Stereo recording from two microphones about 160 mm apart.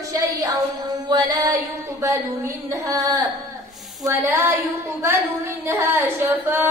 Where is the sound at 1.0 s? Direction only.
30° right (ahead or behind).